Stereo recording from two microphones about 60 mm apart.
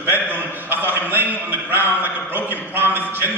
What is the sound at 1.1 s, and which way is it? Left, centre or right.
Speech, right.